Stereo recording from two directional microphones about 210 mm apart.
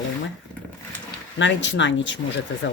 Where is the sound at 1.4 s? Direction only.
60° left (ahead or behind).